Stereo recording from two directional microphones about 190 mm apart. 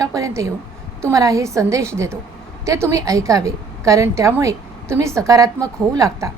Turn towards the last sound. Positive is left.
turn(degrees=-15)  # may be behind; listen again after turning